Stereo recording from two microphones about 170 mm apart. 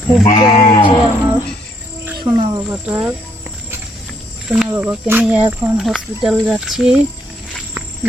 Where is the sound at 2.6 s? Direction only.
5° right (ahead or behind).